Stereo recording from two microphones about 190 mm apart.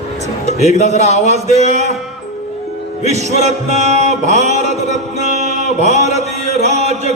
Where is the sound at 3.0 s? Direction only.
35° right (ahead or behind).